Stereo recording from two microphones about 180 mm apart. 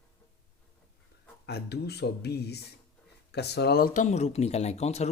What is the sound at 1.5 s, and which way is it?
Speech, 65° left (ahead or behind).